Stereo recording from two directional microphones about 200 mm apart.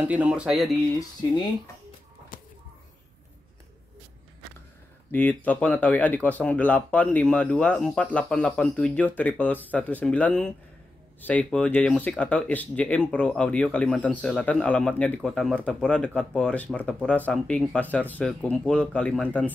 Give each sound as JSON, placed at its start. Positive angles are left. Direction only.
{"t": 0.1, "sound": "speech", "side_deg": -5}
{"t": 0.9, "sound": "speech", "side_deg": 20}
{"t": 2.3, "sound": "a sound", "side_deg": 45}
{"t": 5.1, "sound": "speech", "side_deg": 10}